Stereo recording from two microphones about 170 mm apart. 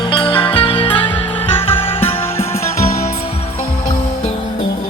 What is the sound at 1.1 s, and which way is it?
Music, 10° left (ahead or behind).